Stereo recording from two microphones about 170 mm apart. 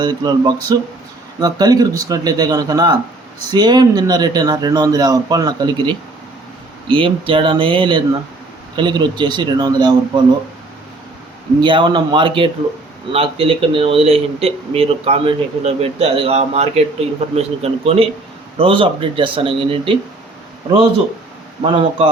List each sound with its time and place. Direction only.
0.0 s speech: 25° right (ahead or behind)
11.6 s speech: 30° right (ahead or behind)
21.6 s speech: 35° right (ahead or behind)